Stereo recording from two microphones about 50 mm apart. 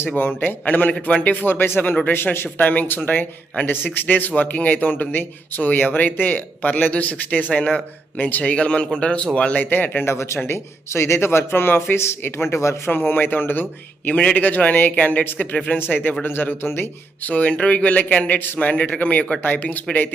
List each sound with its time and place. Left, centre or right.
0.2 s a man's voice: left
2.6 s a man's voice: left
2.8 s a man's voice: left
8.5 s speech: left
9.6 s a man's voice: left
10.1 s a man's voice: left
13.0 s a man's voice: left
16.2 s a man's voice: left
17.2 s speech: left
18.3 s a man's voice: left